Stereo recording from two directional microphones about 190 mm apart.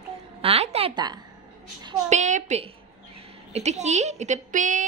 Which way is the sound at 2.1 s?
40° right (ahead or behind).